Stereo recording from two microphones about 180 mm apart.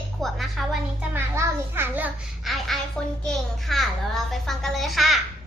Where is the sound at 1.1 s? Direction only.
15° right (ahead or behind).